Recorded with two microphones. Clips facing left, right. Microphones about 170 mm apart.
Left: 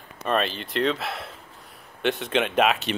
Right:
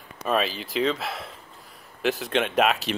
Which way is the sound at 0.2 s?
5° right (ahead or behind).